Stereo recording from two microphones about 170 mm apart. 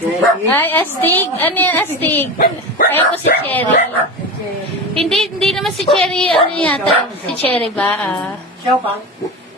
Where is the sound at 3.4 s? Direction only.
10° left (ahead or behind).